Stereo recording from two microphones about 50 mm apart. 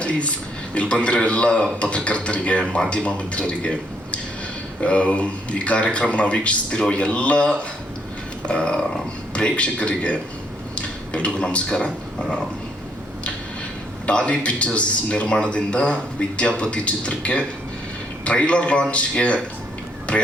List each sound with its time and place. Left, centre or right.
0.0 s speech: left
10.8 s a sound: left
11.3 s speech: centre
14.1 s speech: left